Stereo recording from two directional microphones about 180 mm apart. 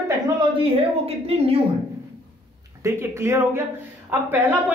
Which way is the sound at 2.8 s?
15° right (ahead or behind).